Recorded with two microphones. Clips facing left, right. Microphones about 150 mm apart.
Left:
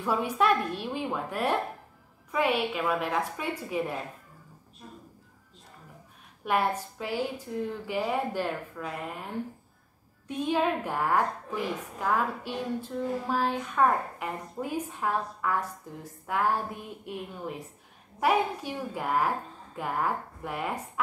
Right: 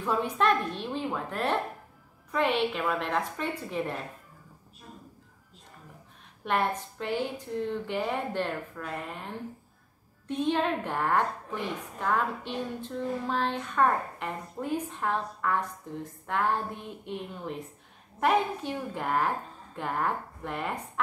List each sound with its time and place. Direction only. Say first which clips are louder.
0.0 s a woman's voice: even; 10° left (ahead or behind)
6.4 s a woman's voice: left 1 dB; 10° left (ahead or behind)
10.2 s a woman's voice: even; 5° left (ahead or behind)